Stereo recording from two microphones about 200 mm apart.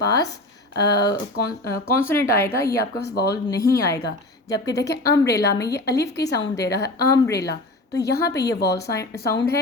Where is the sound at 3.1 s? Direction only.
50° left (ahead or behind).